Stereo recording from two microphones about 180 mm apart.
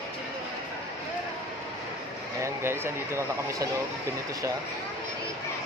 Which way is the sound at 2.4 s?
15° right (ahead or behind).